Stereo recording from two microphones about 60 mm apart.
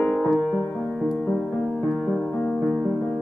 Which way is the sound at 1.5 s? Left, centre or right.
Centre.